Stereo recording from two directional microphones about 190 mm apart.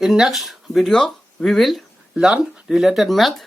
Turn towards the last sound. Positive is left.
turn(degrees=0)  # may be behind; listen again after turning